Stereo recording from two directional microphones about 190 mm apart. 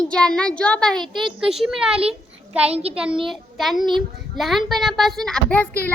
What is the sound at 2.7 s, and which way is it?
Speech, 30° right (ahead or behind).